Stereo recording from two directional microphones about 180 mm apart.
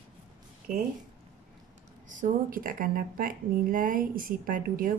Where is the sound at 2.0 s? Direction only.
45° right (ahead or behind).